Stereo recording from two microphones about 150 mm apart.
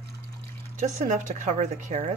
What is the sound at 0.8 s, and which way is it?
A woman's voice, 55° right (ahead or behind).